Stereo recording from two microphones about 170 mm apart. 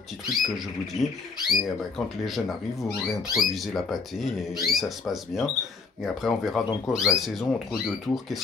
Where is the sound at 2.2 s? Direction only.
Centre (ahead or behind).